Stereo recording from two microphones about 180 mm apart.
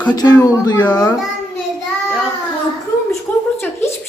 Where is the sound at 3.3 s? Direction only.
10° left (ahead or behind).